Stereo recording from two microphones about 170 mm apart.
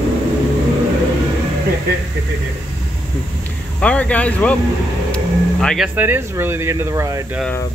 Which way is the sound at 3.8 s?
10° left (ahead or behind).